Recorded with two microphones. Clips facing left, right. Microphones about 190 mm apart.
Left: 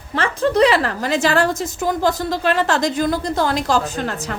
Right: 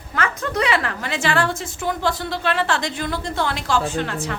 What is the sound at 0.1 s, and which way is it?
A woman's voice, 30° left (ahead or behind).